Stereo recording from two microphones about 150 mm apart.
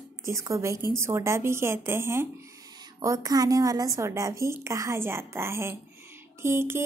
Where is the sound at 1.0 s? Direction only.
20° right (ahead or behind).